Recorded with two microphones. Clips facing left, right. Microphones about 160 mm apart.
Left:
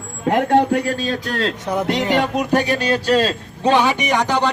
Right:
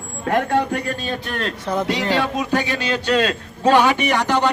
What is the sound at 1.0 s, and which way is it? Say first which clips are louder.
Speech: left 4 dB; 90° left.